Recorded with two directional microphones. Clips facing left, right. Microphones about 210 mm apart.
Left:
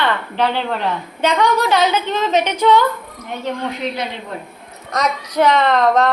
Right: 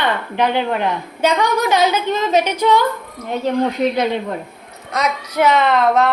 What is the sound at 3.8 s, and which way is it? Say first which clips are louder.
Speech: right 6 dB; 45° right (ahead or behind).